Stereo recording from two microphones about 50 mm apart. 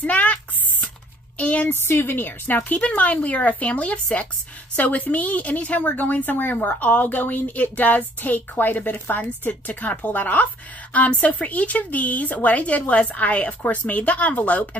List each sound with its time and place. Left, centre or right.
0.0 s a sound: left
1.4 s a woman's voice: left
1.7 s a woman's voice: left
2.8 s a woman's voice: left